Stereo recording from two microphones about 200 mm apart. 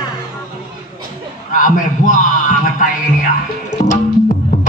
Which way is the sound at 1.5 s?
40° left (ahead or behind).